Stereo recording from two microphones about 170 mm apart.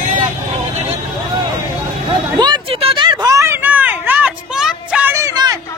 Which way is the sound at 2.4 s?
30° right (ahead or behind).